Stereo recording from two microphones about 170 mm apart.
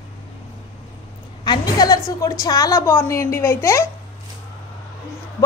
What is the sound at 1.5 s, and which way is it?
A woman's voice, 25° left (ahead or behind).